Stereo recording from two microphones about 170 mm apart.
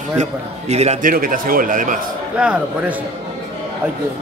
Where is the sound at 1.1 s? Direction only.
55° right (ahead or behind).